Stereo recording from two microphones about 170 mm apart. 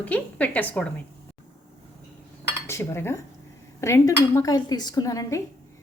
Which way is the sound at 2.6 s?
15° left (ahead or behind).